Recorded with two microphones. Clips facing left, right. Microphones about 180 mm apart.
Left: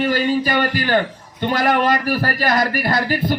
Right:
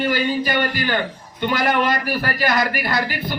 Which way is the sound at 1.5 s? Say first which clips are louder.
Left 3 dB; 40° left (ahead or behind).